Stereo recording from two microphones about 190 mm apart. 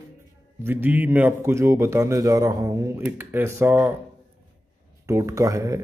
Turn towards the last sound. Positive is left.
turn(degrees=-15)  # may be behind; listen again after turning